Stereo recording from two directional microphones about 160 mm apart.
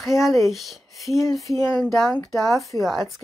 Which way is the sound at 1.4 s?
15° left (ahead or behind).